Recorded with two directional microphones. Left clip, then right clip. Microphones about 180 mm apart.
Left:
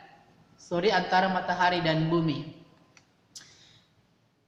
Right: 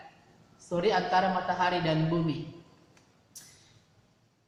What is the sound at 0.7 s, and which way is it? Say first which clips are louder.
A woman's voice: left 2 dB; 30° left (ahead or behind).